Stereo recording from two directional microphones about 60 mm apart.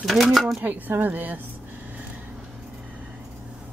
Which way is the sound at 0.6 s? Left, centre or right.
Right.